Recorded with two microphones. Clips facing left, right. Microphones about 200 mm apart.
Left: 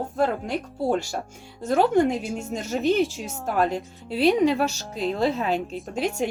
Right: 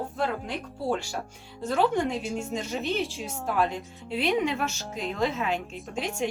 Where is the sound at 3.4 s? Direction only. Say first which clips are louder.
Left 4 dB; 40° left (ahead or behind).